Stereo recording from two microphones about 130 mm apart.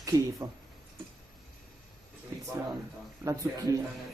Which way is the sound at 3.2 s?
25° right (ahead or behind).